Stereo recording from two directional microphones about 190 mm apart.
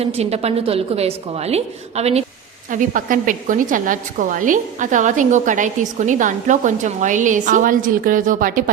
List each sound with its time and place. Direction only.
0.0 s a woman's voice: 35° right (ahead or behind)
2.6 s a woman's voice: 45° right (ahead or behind)